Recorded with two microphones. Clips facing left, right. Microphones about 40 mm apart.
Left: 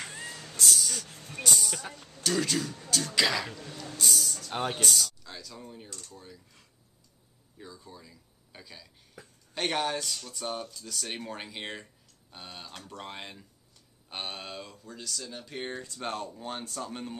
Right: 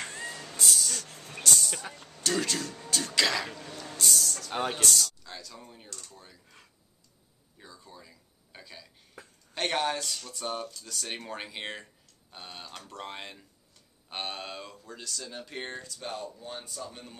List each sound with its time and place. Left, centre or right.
0.2 s cat: centre
0.6 s a sound: centre
1.4 s music: centre
2.2 s speech: centre
3.9 s a sound: centre
4.7 s speech: centre
7.5 s speech: centre
16.0 s speech: left
16.3 s speech: left